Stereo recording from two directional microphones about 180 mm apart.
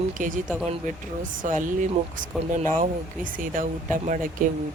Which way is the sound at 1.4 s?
45° right (ahead or behind).